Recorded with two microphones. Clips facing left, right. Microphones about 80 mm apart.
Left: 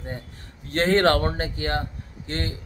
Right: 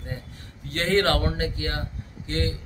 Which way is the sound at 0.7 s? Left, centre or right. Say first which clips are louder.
Left 3 dB; left.